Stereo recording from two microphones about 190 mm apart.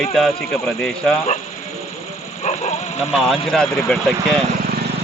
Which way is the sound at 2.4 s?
40° left (ahead or behind).